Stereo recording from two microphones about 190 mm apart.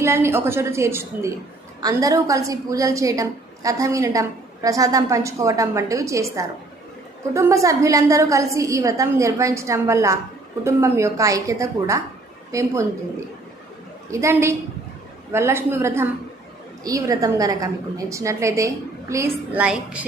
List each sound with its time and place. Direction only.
0.0 s a woman's voice: 15° right (ahead or behind)